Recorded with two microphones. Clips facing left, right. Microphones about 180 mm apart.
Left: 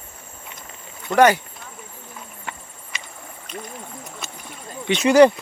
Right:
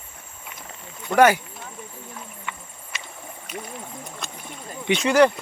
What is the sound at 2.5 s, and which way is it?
Insect, 40° left (ahead or behind).